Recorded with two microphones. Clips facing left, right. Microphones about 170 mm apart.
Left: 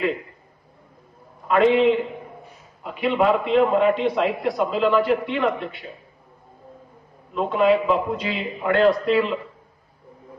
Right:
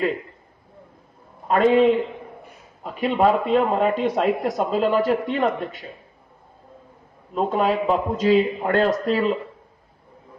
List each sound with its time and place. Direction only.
1.5 s a man's voice: 40° right (ahead or behind)
7.3 s a man's voice: 40° right (ahead or behind)